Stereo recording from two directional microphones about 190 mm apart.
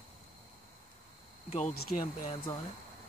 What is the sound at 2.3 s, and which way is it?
Speech, 25° left (ahead or behind).